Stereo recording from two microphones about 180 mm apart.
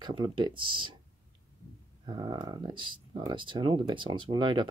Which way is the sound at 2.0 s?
25° right (ahead or behind).